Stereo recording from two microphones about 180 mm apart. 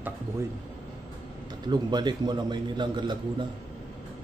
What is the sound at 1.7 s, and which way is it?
A man's voice, 25° right (ahead or behind).